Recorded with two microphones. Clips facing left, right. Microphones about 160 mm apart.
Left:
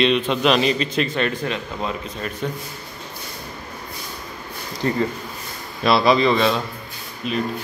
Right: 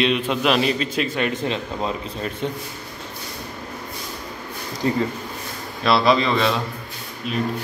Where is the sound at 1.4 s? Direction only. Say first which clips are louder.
Right 1 dB; 25° right (ahead or behind).